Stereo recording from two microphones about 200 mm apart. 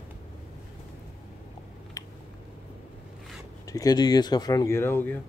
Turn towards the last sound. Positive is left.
turn(degrees=10)  # may be behind; listen again after turning